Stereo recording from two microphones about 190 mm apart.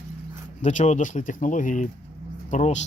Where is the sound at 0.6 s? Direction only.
40° left (ahead or behind).